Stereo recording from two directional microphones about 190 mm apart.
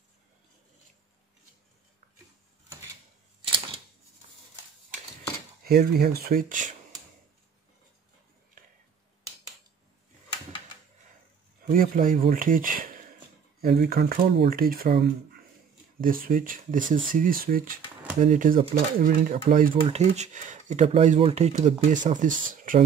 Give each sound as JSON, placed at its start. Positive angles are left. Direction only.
{"t": 5.6, "sound": "speech", "side_deg": -55}
{"t": 11.6, "sound": "speech", "side_deg": -50}